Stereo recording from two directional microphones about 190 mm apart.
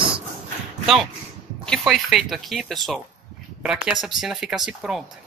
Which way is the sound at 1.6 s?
Centre (ahead or behind).